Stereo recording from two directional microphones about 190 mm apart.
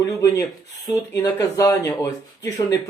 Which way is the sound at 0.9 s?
15° left (ahead or behind).